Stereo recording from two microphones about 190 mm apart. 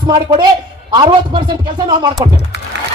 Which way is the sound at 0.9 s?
25° right (ahead or behind).